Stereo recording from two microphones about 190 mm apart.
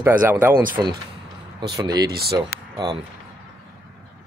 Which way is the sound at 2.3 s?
20° right (ahead or behind).